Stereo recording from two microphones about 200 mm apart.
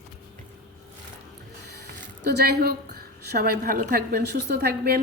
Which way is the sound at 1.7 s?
55° right (ahead or behind).